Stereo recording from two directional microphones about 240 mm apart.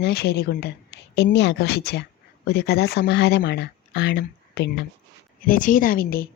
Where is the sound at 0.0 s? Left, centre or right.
Left.